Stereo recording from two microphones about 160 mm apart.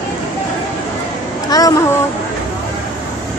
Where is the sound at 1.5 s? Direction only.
25° left (ahead or behind).